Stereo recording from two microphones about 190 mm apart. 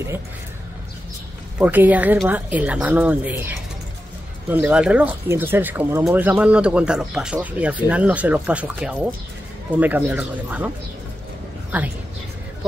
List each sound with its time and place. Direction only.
1.6 s speech: 10° right (ahead or behind)